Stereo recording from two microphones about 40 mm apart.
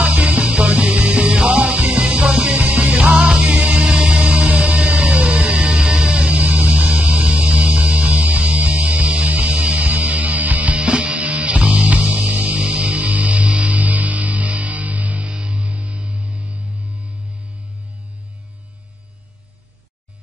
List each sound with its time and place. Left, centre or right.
0.0 s music: right
3.1 s music: right